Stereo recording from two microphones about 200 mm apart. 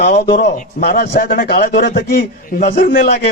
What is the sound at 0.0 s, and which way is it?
A man's voice, 50° left (ahead or behind).